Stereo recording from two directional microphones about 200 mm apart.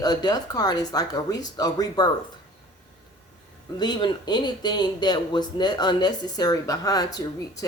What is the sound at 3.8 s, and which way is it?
A man's voice, 20° left (ahead or behind).